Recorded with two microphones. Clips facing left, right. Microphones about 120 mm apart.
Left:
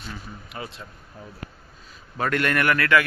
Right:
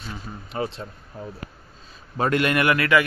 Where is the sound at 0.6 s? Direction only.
35° right (ahead or behind).